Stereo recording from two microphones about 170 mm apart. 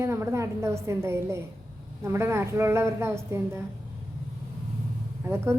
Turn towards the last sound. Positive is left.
turn(degrees=-15)  # may be behind; listen again after turning